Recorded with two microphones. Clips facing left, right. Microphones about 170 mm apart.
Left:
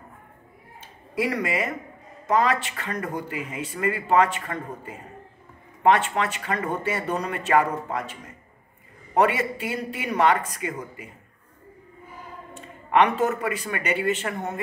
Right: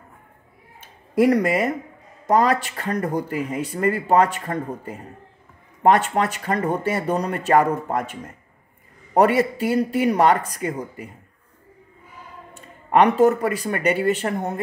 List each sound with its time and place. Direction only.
0.7 s a sound: 45° right (ahead or behind)
2.2 s speech: 40° right (ahead or behind)
12.5 s speech: 40° right (ahead or behind)